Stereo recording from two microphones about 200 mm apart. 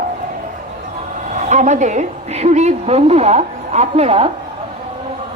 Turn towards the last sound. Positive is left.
turn(degrees=-30)  # may be behind; listen again after turning